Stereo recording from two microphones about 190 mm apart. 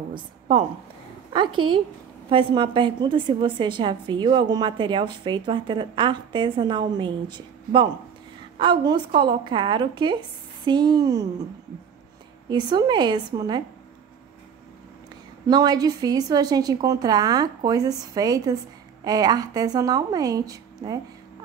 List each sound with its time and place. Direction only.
0.1 s a woman's voice: 35° right (ahead or behind)
12.4 s a woman's voice: 20° right (ahead or behind)
15.4 s a woman's voice: 20° right (ahead or behind)